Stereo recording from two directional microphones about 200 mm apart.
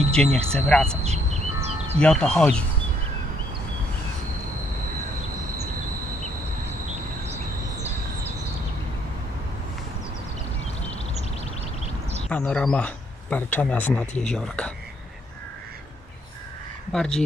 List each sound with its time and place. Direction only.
0.1 s speech: 5° left (ahead or behind)
1.0 s music: 30° right (ahead or behind)
2.0 s speech: 5° left (ahead or behind)
12.3 s speech: 5° left (ahead or behind)
16.9 s speech: 5° left (ahead or behind)